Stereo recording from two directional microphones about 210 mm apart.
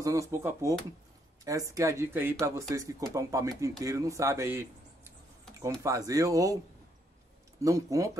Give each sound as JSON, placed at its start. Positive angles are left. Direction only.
{"t": 0.0, "sound": "speech", "side_deg": -15}
{"t": 7.6, "sound": "speech", "side_deg": -15}